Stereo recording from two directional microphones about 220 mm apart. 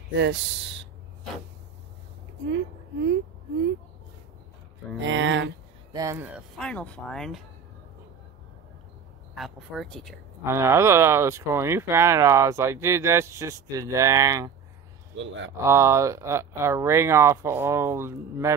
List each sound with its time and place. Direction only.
0.1 s speech: 55° right (ahead or behind)
5.0 s speech: 60° right (ahead or behind)
5.9 s speech: 10° right (ahead or behind)
6.6 s speech: 5° left (ahead or behind)
9.3 s speech: centre (ahead or behind)
10.4 s speech: 10° right (ahead or behind)
15.2 s speech: 55° right (ahead or behind)
15.5 s speech: 10° right (ahead or behind)